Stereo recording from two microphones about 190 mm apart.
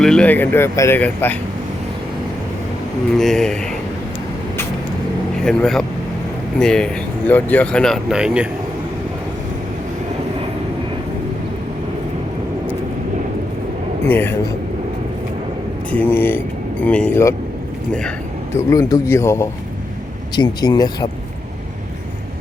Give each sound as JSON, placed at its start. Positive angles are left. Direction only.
{"t": 0.0, "sound": "speech", "side_deg": 5}
{"t": 3.2, "sound": "speech", "side_deg": 0}
{"t": 5.4, "sound": "speech", "side_deg": 5}
{"t": 14.1, "sound": "speech", "side_deg": 10}
{"t": 15.9, "sound": "speech", "side_deg": 10}
{"t": 18.5, "sound": "speech", "side_deg": 15}